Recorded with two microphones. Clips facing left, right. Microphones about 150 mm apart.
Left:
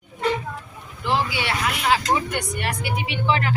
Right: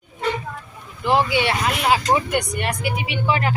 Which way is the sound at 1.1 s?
20° right (ahead or behind).